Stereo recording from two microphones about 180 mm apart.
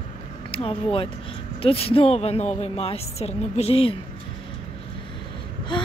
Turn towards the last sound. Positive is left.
turn(degrees=25)  # may be behind; listen again after turning